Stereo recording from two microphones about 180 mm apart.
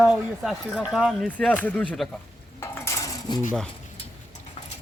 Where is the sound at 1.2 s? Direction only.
10° left (ahead or behind).